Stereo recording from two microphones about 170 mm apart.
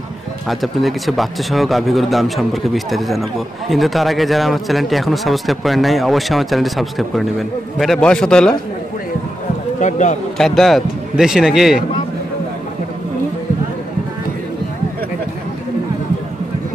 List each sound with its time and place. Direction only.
0.5 s speech: centre (ahead or behind)
9.8 s speech: 45° left (ahead or behind)
10.3 s speech: 5° left (ahead or behind)